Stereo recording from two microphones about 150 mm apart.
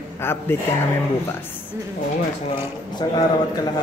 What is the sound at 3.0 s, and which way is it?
Speech, 30° left (ahead or behind).